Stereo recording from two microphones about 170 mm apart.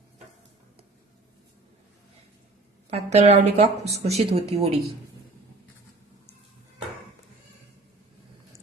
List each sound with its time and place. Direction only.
2.9 s speech: 40° right (ahead or behind)